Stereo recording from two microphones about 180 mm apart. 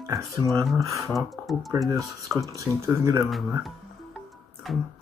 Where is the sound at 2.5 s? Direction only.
15° right (ahead or behind).